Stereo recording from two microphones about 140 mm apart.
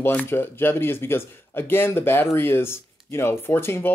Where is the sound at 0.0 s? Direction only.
15° left (ahead or behind).